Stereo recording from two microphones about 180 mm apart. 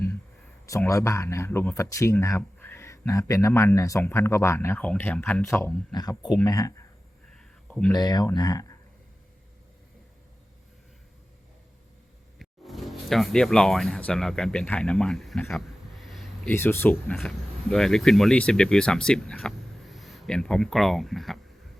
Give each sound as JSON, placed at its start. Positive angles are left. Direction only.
{"t": 0.9, "sound": "speech", "side_deg": 15}
{"t": 7.3, "sound": "a sound", "side_deg": 5}
{"t": 7.9, "sound": "speech", "side_deg": 25}
{"t": 12.4, "sound": "speech", "side_deg": 0}
{"t": 16.5, "sound": "speech", "side_deg": 10}